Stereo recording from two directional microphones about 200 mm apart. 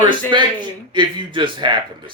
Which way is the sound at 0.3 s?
25° right (ahead or behind).